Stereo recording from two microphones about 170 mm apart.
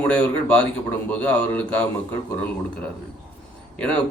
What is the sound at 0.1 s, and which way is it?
A man's voice, 10° left (ahead or behind).